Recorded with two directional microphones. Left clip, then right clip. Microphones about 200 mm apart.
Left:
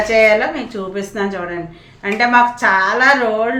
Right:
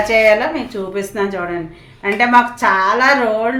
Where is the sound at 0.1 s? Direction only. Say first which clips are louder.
Even; 25° right (ahead or behind).